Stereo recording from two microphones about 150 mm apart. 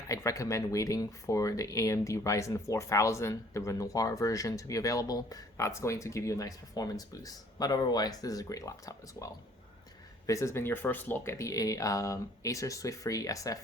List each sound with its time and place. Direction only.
0.1 s speech: 20° left (ahead or behind)